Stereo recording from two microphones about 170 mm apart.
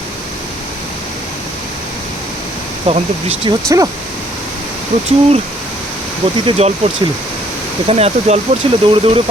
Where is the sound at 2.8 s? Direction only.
35° right (ahead or behind).